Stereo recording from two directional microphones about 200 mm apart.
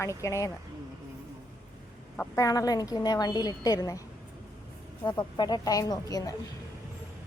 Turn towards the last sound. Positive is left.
turn(degrees=15)  # may be behind; listen again after turning